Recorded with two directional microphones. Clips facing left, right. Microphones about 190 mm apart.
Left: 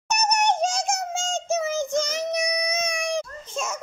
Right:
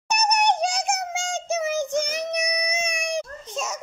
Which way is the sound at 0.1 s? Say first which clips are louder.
Right 1 dB; 15° right (ahead or behind).